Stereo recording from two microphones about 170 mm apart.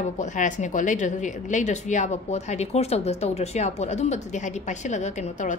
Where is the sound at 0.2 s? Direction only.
45° left (ahead or behind).